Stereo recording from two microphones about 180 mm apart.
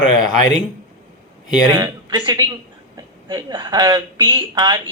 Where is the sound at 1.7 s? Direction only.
25° right (ahead or behind).